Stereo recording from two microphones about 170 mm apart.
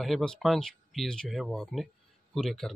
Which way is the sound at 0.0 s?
Centre (ahead or behind).